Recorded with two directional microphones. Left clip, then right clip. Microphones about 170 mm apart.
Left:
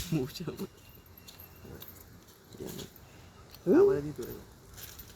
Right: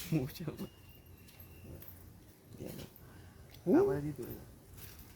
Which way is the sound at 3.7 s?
5° right (ahead or behind).